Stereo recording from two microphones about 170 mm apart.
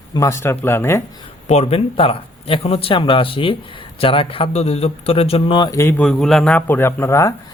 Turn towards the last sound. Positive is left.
turn(degrees=15)  # may be behind; listen again after turning